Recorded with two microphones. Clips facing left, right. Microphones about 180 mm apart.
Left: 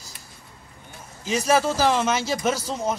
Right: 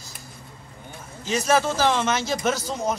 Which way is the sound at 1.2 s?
5° left (ahead or behind).